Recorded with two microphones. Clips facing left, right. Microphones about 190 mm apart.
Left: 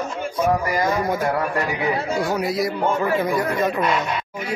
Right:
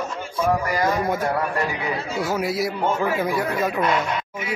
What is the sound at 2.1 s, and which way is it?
A man's voice, 5° right (ahead or behind).